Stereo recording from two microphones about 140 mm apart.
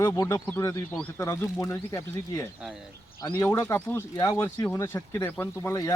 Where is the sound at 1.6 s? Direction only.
25° left (ahead or behind).